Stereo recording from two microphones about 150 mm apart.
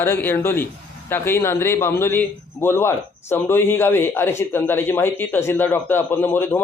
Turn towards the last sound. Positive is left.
turn(degrees=15)  # may be behind; listen again after turning